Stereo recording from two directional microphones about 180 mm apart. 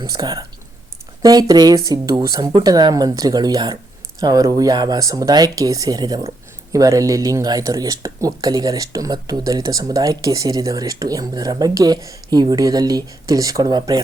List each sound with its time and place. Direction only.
0.0 s speech: 20° right (ahead or behind)